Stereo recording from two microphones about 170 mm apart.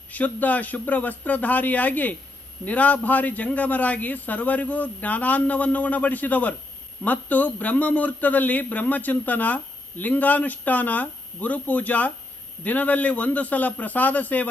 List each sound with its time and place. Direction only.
0.1 s a man's voice: 10° left (ahead or behind)